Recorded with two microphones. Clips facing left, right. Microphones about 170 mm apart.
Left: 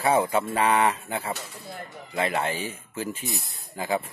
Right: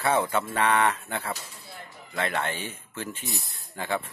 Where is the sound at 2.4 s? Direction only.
10° left (ahead or behind).